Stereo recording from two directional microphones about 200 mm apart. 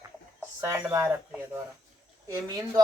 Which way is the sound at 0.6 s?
15° right (ahead or behind).